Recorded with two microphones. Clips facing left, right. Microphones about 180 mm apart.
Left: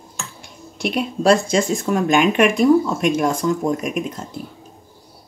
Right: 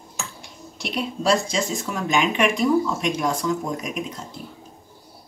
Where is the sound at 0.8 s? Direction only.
55° left (ahead or behind).